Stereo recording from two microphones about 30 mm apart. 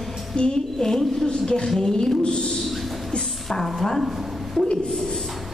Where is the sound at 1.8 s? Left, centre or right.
Left.